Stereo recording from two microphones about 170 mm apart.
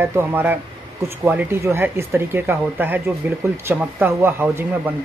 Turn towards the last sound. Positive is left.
turn(degrees=-10)  # may be behind; listen again after turning